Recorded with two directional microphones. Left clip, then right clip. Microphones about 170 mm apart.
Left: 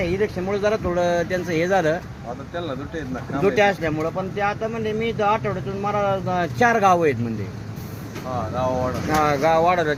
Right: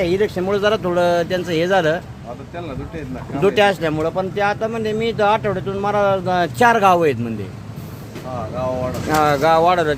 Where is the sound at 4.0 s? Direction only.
35° right (ahead or behind); by 7.1 s 20° right (ahead or behind).